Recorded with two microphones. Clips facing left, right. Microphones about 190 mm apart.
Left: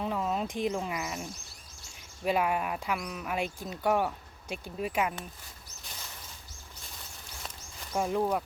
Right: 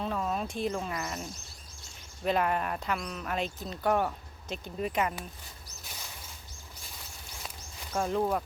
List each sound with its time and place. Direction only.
0.0 s speech: 15° left (ahead or behind)
7.9 s speech: 10° left (ahead or behind)
8.2 s speech: centre (ahead or behind)